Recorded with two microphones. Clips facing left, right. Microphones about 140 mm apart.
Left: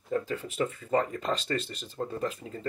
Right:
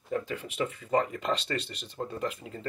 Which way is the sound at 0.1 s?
35° left (ahead or behind).